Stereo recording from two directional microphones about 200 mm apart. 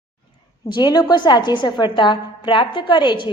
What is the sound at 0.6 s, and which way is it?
A woman's voice, 20° left (ahead or behind).